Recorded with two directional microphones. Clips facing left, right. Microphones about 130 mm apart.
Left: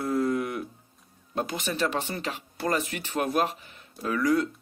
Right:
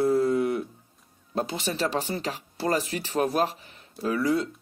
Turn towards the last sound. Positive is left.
turn(degrees=-30)  # may be behind; listen again after turning